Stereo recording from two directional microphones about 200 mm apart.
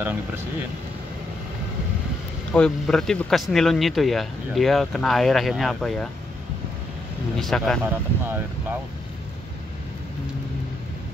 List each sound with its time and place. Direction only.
2.5 s speech: 5° left (ahead or behind)
7.3 s speech: centre (ahead or behind)
7.8 s speech: 10° right (ahead or behind)